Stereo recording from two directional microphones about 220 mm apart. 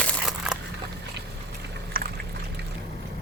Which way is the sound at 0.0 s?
Centre (ahead or behind).